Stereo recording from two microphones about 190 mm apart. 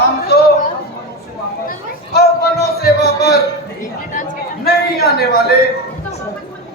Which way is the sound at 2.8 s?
55° left (ahead or behind).